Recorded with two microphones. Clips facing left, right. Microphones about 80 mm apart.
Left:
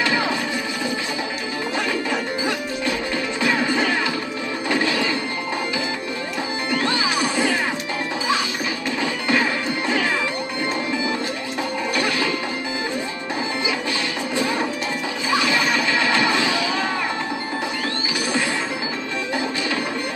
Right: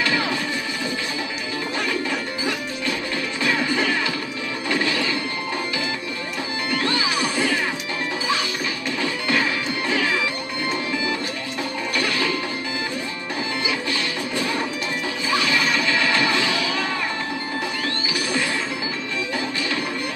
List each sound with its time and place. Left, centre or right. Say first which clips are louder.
0.0 s music: left 2 dB; left
3.4 s music: left 1 dB; left
6.7 s music: left 1 dB; left
9.0 s music: left 2 dB; left
14.3 s music: left 4 dB; left